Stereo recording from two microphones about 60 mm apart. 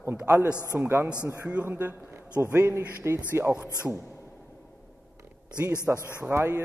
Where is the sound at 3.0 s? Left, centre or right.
Right.